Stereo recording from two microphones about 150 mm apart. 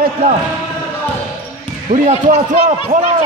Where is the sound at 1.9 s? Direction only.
55° right (ahead or behind).